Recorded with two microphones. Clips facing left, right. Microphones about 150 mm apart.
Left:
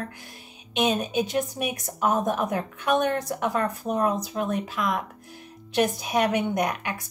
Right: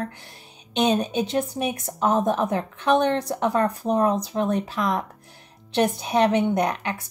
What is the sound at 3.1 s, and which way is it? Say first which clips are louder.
Speech: right 3 dB; 30° right (ahead or behind).